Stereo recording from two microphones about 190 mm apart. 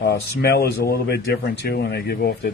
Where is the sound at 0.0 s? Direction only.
60° left (ahead or behind).